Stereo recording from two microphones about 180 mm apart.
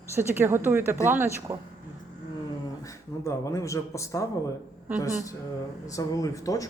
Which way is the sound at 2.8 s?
15° left (ahead or behind).